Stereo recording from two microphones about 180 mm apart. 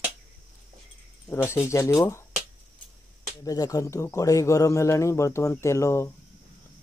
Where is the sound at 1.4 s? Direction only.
15° left (ahead or behind).